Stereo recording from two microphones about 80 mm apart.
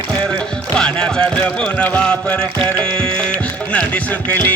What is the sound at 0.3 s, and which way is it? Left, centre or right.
Music, centre.